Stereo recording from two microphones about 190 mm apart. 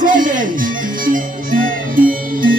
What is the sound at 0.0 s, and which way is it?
Music, 45° right (ahead or behind).